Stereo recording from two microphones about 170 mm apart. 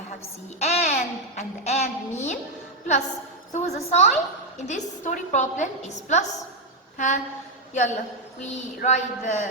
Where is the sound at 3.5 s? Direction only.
45° left (ahead or behind).